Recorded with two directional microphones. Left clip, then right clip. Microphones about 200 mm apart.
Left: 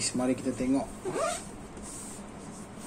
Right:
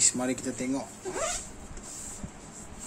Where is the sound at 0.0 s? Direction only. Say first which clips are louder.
Right 1 dB; 15° right (ahead or behind).